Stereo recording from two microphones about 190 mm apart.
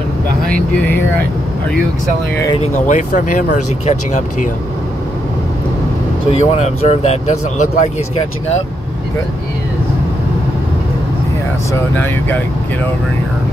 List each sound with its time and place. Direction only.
2.3 s speech: 20° left (ahead or behind)
2.6 s speech: 40° left (ahead or behind)
6.3 s speech: 35° left (ahead or behind)
11.9 s speech: 10° left (ahead or behind)